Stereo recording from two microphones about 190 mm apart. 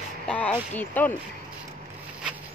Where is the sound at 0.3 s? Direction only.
5° left (ahead or behind).